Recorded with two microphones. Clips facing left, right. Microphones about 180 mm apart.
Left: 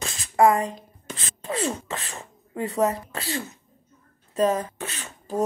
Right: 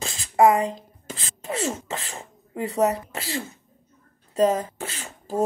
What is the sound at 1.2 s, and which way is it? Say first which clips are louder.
Speech: even; 25° right (ahead or behind).